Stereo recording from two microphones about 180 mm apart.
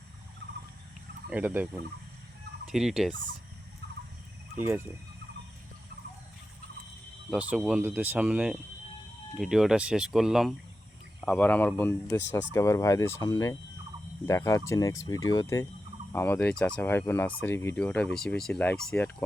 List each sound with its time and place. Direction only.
1.3 s speech: 10° right (ahead or behind)
2.6 s fowl: centre (ahead or behind)
4.5 s speech: 15° right (ahead or behind)
7.3 s speech: 5° right (ahead or behind)